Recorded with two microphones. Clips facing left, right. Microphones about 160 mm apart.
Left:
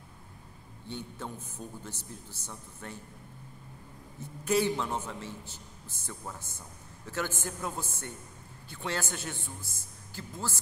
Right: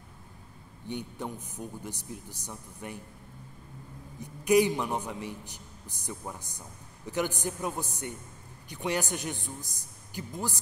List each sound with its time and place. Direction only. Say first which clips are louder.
0.8 s a man's voice: right 4 dB; 15° right (ahead or behind)
4.2 s a man's voice: right 5 dB; 15° right (ahead or behind)